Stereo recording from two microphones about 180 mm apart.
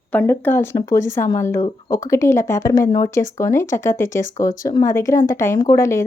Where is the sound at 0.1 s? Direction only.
10° left (ahead or behind).